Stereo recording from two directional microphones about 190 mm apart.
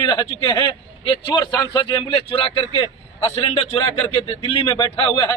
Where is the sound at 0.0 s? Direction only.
20° left (ahead or behind).